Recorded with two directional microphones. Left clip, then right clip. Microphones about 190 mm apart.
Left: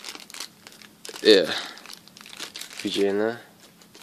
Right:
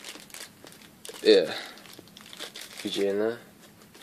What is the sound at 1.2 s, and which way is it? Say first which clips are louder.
Speech: left 3 dB; 45° left (ahead or behind).